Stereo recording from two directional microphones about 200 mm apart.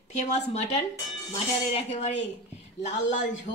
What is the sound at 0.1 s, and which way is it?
A man's voice, 35° left (ahead or behind).